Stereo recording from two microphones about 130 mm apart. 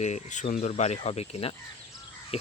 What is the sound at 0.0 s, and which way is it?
Speech, 65° left (ahead or behind).